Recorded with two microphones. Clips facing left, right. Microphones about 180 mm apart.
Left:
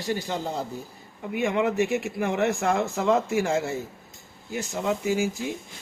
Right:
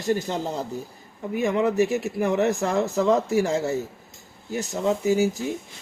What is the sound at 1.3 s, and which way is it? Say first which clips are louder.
Speech: right 2 dB; 35° right (ahead or behind).